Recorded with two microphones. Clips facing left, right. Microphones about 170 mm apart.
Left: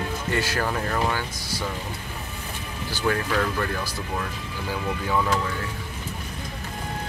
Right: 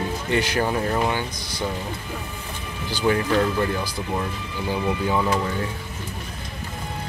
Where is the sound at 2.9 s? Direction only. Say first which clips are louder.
Right 4 dB; 20° right (ahead or behind).